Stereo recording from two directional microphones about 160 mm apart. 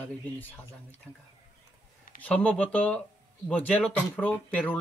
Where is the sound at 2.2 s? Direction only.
5° left (ahead or behind).